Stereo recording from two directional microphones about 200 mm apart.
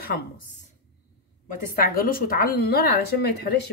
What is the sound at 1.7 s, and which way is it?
A woman's voice, 45° left (ahead or behind).